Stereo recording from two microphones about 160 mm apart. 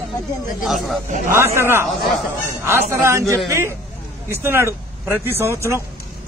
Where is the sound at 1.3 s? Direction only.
15° right (ahead or behind).